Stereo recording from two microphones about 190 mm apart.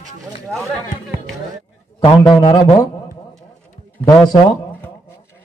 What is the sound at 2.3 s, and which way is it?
Speech, 25° left (ahead or behind).